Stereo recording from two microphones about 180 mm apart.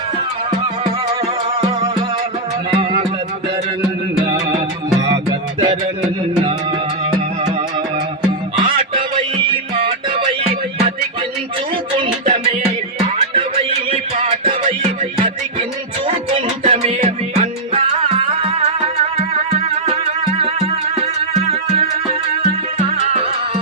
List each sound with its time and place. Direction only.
2.7 s music: 30° right (ahead or behind)
5.0 s music: 25° right (ahead or behind)
8.5 s music: 25° right (ahead or behind)
13.0 s music: 30° right (ahead or behind)
16.3 s music: 30° right (ahead or behind)
21.5 s music: 30° right (ahead or behind)